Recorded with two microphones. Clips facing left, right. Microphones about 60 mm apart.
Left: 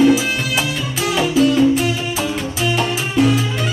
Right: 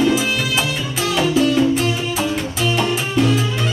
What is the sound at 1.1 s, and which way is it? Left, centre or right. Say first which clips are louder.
Music: even; centre.